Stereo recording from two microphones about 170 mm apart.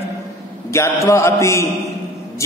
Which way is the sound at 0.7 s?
15° left (ahead or behind).